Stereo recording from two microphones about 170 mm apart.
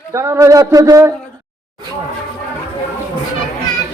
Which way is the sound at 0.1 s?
15° right (ahead or behind).